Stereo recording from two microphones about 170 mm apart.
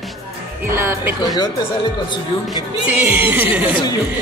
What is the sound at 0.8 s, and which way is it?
Speech, 15° right (ahead or behind).